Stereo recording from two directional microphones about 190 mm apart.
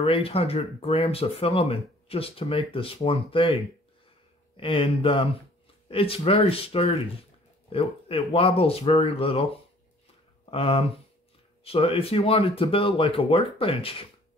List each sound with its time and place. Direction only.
0.0 s speech: 30° left (ahead or behind)
4.6 s speech: 25° left (ahead or behind)